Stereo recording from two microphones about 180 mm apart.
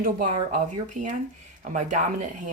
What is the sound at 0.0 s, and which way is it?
Speech, 45° right (ahead or behind).